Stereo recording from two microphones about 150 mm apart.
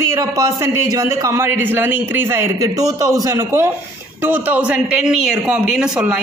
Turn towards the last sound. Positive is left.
turn(degrees=-5)  # may be behind; listen again after turning